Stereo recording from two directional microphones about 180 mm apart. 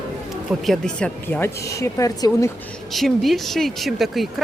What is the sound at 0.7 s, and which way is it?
Speech, 5° left (ahead or behind).